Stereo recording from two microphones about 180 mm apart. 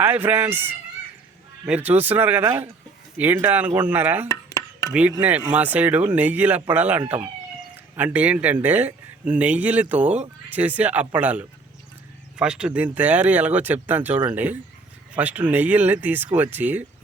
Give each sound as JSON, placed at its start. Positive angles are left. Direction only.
{"t": 0.0, "sound": "speech", "side_deg": -10}
{"t": 4.3, "sound": "a sound", "side_deg": 15}
{"t": 5.5, "sound": "speech", "side_deg": -10}